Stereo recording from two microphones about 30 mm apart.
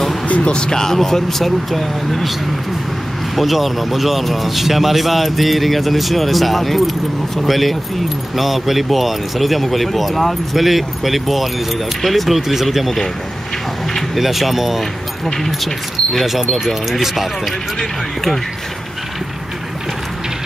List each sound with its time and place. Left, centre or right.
0.5 s speech: left
0.7 s speech: centre
3.3 s speech: centre
12.4 s speech: centre
14.1 s speech: centre